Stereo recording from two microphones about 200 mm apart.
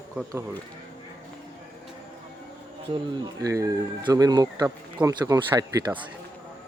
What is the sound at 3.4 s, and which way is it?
Speech, 15° right (ahead or behind).